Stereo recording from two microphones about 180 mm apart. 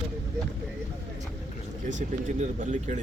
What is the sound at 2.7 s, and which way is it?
Speech, 45° right (ahead or behind).